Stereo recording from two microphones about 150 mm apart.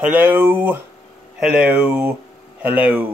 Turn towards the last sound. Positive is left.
turn(degrees=-10)  # may be behind; listen again after turning